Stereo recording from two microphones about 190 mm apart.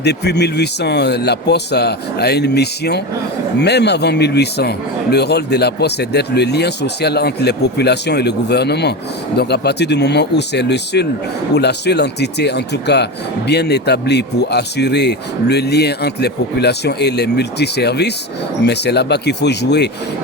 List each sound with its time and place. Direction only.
0.0 s speech: 60° left (ahead or behind)